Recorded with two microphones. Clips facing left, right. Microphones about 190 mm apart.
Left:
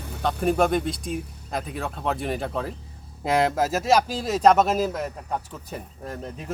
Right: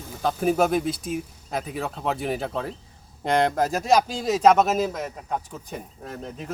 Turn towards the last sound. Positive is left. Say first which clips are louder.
# left 1 dB
turn(degrees=0)  # may be behind; listen again after turning